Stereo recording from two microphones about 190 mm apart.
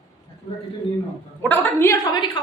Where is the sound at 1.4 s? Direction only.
10° left (ahead or behind).